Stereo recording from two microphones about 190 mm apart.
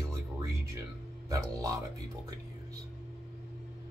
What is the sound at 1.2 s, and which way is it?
Speech, 15° right (ahead or behind).